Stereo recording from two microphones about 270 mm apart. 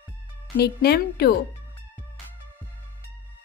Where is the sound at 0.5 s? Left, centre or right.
Left.